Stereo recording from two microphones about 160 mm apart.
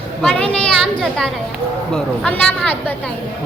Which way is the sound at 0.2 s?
5° left (ahead or behind).